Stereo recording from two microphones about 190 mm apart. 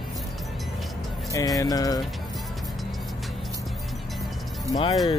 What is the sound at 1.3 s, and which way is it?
Speech, 20° left (ahead or behind).